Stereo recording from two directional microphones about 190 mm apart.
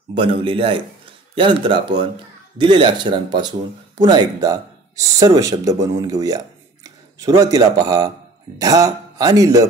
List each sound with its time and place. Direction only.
0.1 s speech: 30° right (ahead or behind)